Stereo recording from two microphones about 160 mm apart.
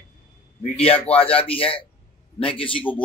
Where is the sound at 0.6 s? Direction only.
40° left (ahead or behind).